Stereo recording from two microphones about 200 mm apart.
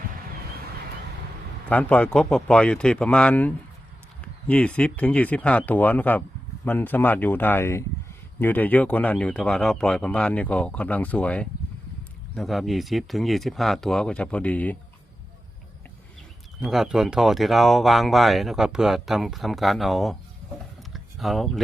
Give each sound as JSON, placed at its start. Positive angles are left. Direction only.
{"t": 1.7, "sound": "speech", "side_deg": 5}
{"t": 16.6, "sound": "speech", "side_deg": 0}
{"t": 20.9, "sound": "a sound", "side_deg": 0}